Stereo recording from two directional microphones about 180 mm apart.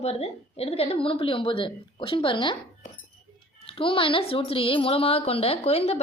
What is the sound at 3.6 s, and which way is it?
A woman's voice, 30° left (ahead or behind).